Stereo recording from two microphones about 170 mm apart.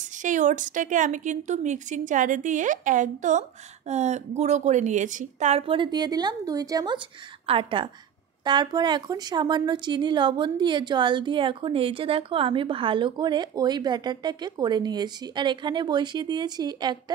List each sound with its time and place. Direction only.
0.0 s a woman's voice: 45° right (ahead or behind); by 17.0 s 25° right (ahead or behind)